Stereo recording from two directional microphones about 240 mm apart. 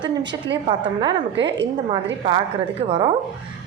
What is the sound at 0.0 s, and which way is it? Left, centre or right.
A woman's voice, right.